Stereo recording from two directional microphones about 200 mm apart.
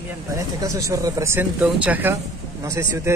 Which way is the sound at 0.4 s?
15° right (ahead or behind).